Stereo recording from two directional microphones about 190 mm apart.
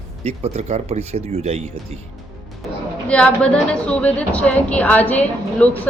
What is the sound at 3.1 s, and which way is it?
A woman's voice, 5° left (ahead or behind).